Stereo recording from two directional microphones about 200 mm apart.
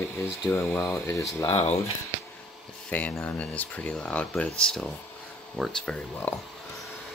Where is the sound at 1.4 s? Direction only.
30° left (ahead or behind).